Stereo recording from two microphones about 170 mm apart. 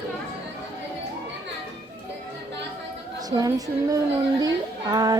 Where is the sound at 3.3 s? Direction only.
20° right (ahead or behind).